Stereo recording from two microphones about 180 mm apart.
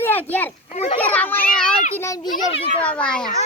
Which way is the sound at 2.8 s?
5° left (ahead or behind).